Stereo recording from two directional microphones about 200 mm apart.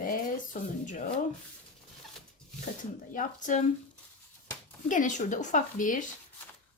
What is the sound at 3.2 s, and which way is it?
Speech, 40° left (ahead or behind).